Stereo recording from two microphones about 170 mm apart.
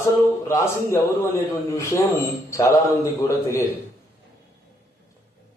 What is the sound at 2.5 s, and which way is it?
A man's voice, 20° left (ahead or behind).